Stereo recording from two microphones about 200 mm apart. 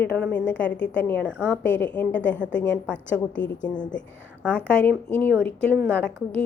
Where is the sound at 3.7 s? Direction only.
20° left (ahead or behind).